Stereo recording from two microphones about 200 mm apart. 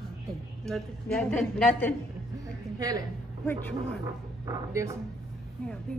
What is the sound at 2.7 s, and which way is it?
Speech, 20° right (ahead or behind).